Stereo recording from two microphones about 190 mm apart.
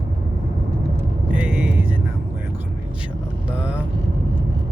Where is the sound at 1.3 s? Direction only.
5° right (ahead or behind).